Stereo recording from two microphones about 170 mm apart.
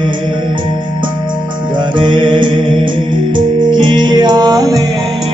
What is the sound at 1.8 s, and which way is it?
Music, 30° right (ahead or behind).